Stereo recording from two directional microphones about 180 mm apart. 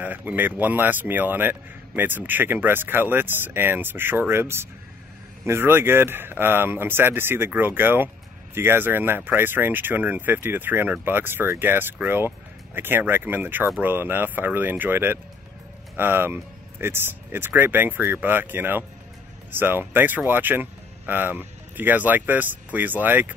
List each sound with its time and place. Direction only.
0.0 s speech: 10° right (ahead or behind)